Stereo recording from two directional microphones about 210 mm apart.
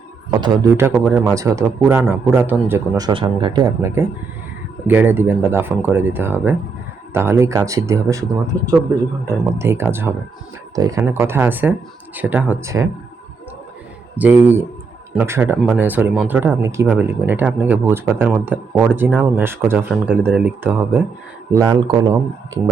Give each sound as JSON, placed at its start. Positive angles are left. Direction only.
{"t": 0.3, "sound": "speech", "side_deg": -15}
{"t": 3.1, "sound": "speech", "side_deg": -25}
{"t": 14.2, "sound": "a man's voice", "side_deg": -10}